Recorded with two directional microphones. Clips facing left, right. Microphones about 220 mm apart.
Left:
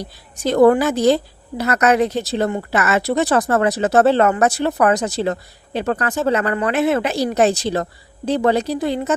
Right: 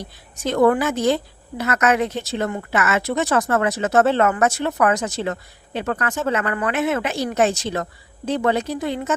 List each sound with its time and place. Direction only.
0.0 s a woman's voice: 35° left (ahead or behind)